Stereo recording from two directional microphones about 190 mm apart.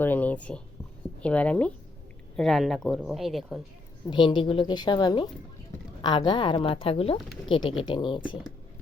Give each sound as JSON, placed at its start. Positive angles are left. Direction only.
{"t": 0.0, "sound": "speech", "side_deg": 10}
{"t": 4.1, "sound": "a woman's voice", "side_deg": 25}